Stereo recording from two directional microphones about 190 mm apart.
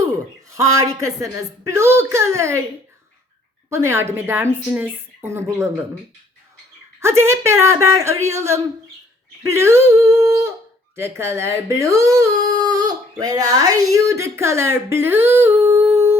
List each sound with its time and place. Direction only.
0.7 s a woman's voice: 15° right (ahead or behind)
3.7 s a woman's voice: 15° right (ahead or behind)
7.0 s a woman's voice: 15° right (ahead or behind)